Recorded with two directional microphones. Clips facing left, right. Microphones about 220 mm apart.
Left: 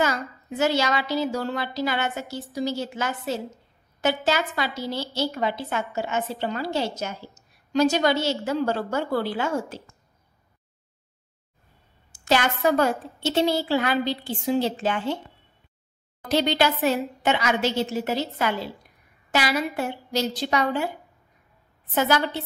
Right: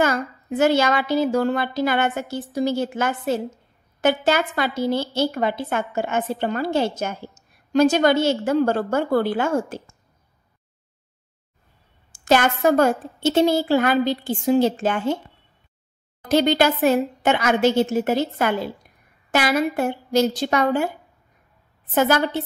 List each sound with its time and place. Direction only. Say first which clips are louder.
0.0 s a woman's voice: right 4 dB; 55° right (ahead or behind)
12.1 s a woman's voice: right 4 dB; 45° right (ahead or behind)
16.3 s a woman's voice: right 4 dB; 50° right (ahead or behind)
21.9 s a woman's voice: right 4 dB; 50° right (ahead or behind)